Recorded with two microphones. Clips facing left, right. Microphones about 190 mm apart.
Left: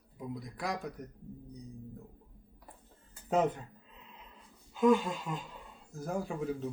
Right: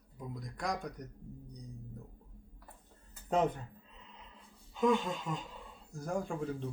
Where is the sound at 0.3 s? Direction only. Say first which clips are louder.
Right 1 dB; 5° left (ahead or behind).